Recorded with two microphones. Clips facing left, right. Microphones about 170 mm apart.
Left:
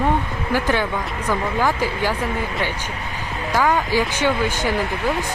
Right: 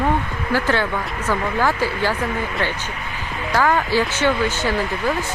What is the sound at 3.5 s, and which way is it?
Speech, 15° left (ahead or behind).